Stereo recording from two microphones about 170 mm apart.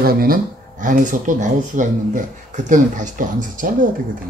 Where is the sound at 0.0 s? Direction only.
60° right (ahead or behind).